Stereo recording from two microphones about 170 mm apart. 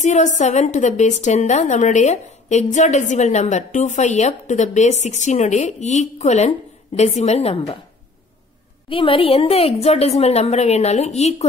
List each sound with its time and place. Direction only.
0.0 s a woman's voice: 45° left (ahead or behind)
8.8 s a woman's voice: 30° left (ahead or behind)